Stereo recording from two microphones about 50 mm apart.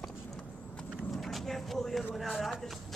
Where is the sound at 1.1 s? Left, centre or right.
Centre.